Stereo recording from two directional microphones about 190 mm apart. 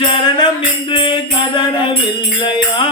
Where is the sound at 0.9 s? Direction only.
25° left (ahead or behind).